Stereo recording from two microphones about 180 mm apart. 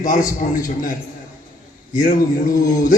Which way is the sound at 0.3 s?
50° left (ahead or behind).